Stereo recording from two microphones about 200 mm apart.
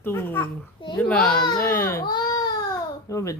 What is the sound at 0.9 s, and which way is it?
Speech, 5° left (ahead or behind).